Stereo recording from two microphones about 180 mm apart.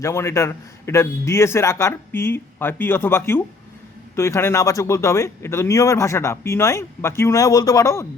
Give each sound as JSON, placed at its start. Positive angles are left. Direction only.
{"t": 0.0, "sound": "speech", "side_deg": 15}